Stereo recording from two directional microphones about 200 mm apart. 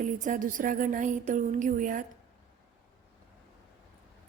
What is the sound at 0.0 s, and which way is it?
A woman's voice, 40° right (ahead or behind).